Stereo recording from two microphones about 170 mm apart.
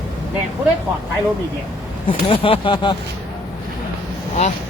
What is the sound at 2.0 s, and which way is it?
Speech, 30° left (ahead or behind).